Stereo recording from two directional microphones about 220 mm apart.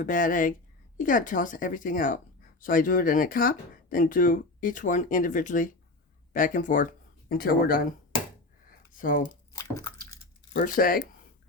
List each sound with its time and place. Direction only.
0.0 s speech: 35° left (ahead or behind)
9.0 s speech: 40° left (ahead or behind)
9.5 s drip: 15° left (ahead or behind)
10.5 s speech: 40° left (ahead or behind)